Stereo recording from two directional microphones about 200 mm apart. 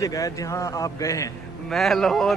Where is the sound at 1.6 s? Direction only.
Centre (ahead or behind).